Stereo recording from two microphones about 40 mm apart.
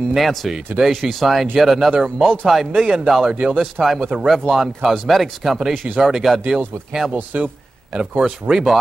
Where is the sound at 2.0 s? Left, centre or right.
Centre.